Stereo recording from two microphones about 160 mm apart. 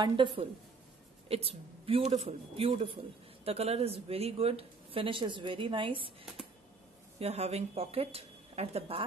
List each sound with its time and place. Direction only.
0.0 s speech: 30° right (ahead or behind)
7.2 s speech: 40° right (ahead or behind)